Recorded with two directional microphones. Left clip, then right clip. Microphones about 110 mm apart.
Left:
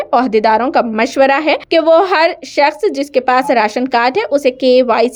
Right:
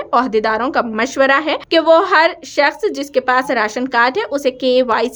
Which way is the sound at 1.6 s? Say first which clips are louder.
Left 1 dB; 20° left (ahead or behind).